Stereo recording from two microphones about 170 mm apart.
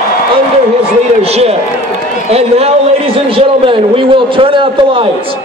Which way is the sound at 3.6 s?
30° right (ahead or behind).